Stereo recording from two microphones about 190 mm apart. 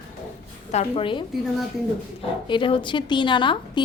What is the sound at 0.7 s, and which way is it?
Speech, 30° left (ahead or behind).